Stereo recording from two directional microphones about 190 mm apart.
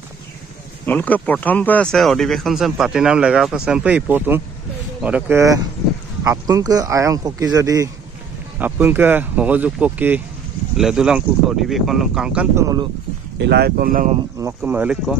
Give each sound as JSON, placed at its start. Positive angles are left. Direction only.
{"t": 0.8, "sound": "speech", "side_deg": 10}
{"t": 13.4, "sound": "speech", "side_deg": -60}
{"t": 14.4, "sound": "speech", "side_deg": -10}